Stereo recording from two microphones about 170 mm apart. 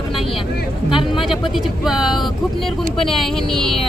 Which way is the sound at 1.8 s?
Centre (ahead or behind).